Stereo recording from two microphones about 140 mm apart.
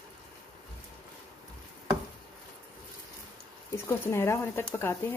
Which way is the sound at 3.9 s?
20° left (ahead or behind).